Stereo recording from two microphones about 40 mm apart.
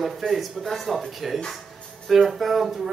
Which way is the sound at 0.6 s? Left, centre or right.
Centre.